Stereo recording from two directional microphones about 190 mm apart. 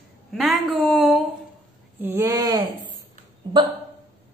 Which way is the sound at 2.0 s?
10° right (ahead or behind).